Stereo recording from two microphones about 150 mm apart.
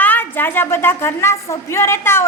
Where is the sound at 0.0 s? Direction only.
10° left (ahead or behind).